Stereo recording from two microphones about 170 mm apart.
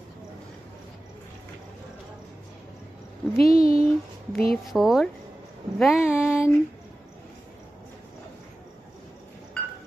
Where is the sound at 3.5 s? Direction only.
55° left (ahead or behind).